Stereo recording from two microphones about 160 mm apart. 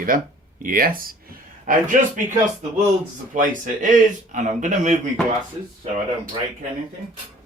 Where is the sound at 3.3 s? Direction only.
50° right (ahead or behind).